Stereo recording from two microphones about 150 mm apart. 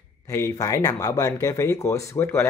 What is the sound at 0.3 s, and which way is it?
Speech, 20° left (ahead or behind).